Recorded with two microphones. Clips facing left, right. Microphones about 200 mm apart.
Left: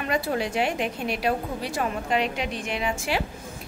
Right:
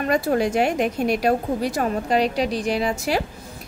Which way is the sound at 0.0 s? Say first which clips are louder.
Right 6 dB; 45° right (ahead or behind).